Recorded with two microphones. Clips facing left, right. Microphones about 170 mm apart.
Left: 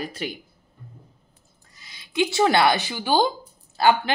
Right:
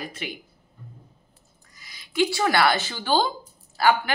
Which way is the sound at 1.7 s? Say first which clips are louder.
Left 1 dB; 25° left (ahead or behind).